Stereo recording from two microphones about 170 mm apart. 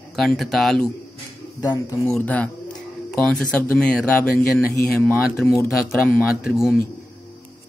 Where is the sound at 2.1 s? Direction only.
10° left (ahead or behind).